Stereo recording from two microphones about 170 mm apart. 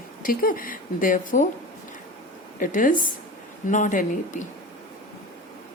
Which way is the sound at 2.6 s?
50° left (ahead or behind).